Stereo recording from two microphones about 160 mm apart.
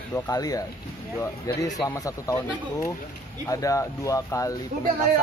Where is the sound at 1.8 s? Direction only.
20° left (ahead or behind).